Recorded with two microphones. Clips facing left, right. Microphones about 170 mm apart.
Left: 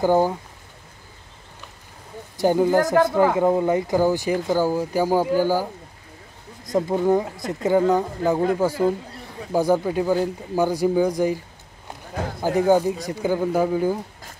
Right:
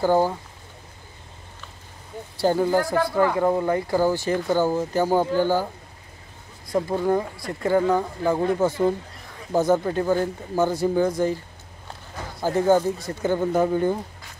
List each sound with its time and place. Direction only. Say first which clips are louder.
0.0 s speech: left 1 dB; 15° left (ahead or behind)
2.3 s speech: left 2 dB; 15° left (ahead or behind)
2.8 s speech: left 5 dB; 45° left (ahead or behind)
3.2 s speech: left 2 dB; 20° left (ahead or behind)
6.7 s speech: left 3 dB; 20° left (ahead or behind)